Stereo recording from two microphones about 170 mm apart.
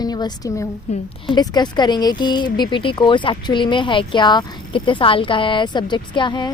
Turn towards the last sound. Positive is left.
turn(degrees=25)  # may be behind; listen again after turning